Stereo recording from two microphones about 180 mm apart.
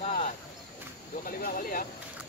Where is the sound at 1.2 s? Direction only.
50° left (ahead or behind).